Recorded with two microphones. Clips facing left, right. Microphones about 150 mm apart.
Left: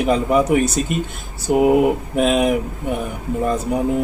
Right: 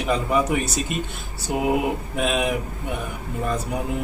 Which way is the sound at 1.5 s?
45° left (ahead or behind).